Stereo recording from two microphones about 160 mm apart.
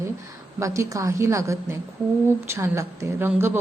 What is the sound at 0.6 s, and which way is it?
A woman's voice, 20° right (ahead or behind).